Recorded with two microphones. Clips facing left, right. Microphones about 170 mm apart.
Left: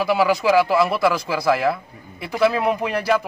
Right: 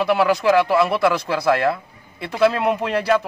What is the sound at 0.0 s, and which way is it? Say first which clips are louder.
A man's voice: right 1 dB; 5° left (ahead or behind).